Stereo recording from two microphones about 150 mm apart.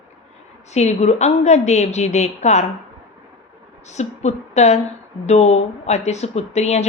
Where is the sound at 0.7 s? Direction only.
50° left (ahead or behind).